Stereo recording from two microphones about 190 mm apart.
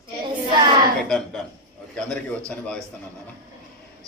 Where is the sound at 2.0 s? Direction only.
5° left (ahead or behind).